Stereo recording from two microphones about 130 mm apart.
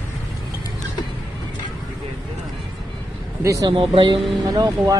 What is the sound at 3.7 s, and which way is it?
Speech, 40° right (ahead or behind).